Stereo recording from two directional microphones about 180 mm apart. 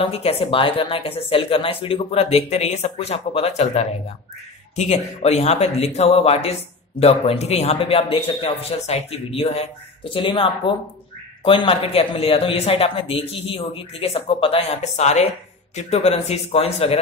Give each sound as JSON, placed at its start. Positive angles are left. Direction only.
{"t": 0.0, "sound": "speech", "side_deg": 35}